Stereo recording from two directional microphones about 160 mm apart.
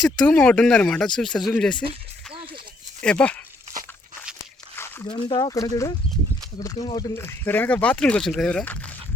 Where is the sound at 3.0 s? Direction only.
5° left (ahead or behind).